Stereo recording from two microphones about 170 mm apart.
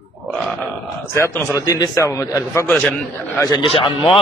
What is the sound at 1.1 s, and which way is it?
A man's voice, 15° left (ahead or behind).